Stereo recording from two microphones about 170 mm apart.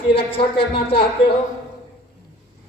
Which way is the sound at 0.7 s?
30° left (ahead or behind).